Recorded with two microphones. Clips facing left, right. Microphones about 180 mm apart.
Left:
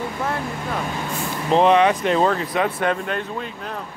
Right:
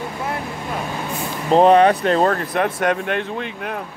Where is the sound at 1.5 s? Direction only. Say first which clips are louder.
Right 3 dB; 40° right (ahead or behind).